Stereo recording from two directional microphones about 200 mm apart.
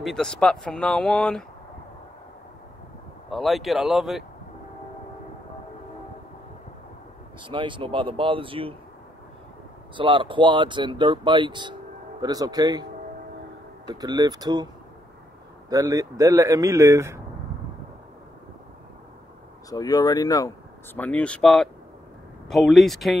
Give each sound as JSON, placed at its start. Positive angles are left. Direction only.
{"t": 0.0, "sound": "speech", "side_deg": 0}
{"t": 3.3, "sound": "speech", "side_deg": 0}
{"t": 7.4, "sound": "speech", "side_deg": -25}
{"t": 9.9, "sound": "speech", "side_deg": -25}
{"t": 14.0, "sound": "speech", "side_deg": -20}
{"t": 15.7, "sound": "a man's voice", "side_deg": -15}
{"t": 19.7, "sound": "speech", "side_deg": 20}